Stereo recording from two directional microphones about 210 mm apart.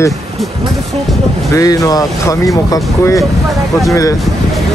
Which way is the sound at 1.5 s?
15° left (ahead or behind).